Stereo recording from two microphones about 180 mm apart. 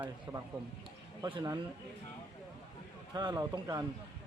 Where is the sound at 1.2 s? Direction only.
25° right (ahead or behind).